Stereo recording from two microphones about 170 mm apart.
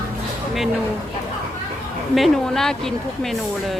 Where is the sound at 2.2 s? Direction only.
5° left (ahead or behind).